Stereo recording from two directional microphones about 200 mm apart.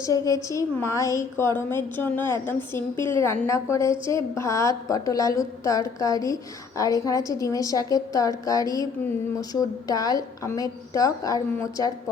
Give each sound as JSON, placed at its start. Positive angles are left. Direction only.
{"t": 0.0, "sound": "a woman's voice", "side_deg": 15}